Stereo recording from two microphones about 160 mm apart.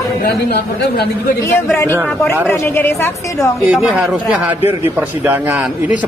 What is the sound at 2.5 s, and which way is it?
A woman's voice, 15° left (ahead or behind).